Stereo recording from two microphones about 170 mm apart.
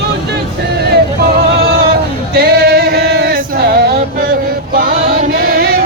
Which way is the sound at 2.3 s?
65° right (ahead or behind).